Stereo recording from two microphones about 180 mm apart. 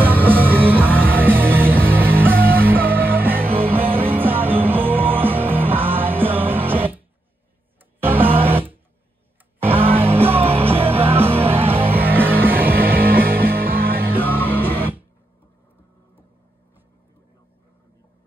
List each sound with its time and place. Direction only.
0.0 s music: 10° right (ahead or behind)
3.8 s music: 30° right (ahead or behind)
4.1 s music: 10° right (ahead or behind)
8.0 s music: 10° right (ahead or behind)
12.6 s music: 55° right (ahead or behind)